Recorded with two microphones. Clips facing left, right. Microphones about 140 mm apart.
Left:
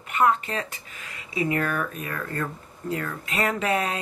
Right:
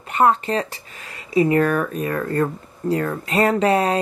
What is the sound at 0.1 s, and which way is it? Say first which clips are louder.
Speech: right 5 dB; 35° right (ahead or behind).